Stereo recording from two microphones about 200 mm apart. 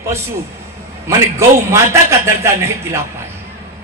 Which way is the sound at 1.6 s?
15° right (ahead or behind).